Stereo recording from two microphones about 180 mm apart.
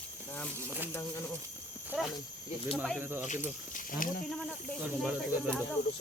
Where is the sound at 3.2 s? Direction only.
40° left (ahead or behind).